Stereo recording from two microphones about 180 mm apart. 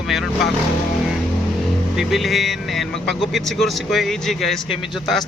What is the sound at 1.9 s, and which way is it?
Speech, centre (ahead or behind).